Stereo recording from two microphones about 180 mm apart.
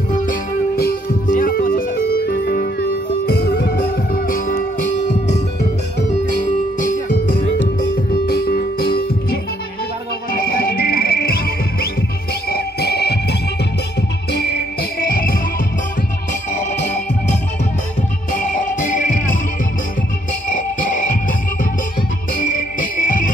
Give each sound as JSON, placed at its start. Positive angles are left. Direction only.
{"t": 0.1, "sound": "music", "side_deg": 55}
{"t": 6.8, "sound": "music", "side_deg": 50}
{"t": 8.3, "sound": "music", "side_deg": 60}
{"t": 10.4, "sound": "music", "side_deg": 55}
{"t": 14.3, "sound": "cricket", "side_deg": 65}
{"t": 18.3, "sound": "music", "side_deg": 45}
{"t": 20.4, "sound": "music", "side_deg": 45}
{"t": 22.4, "sound": "cricket", "side_deg": 50}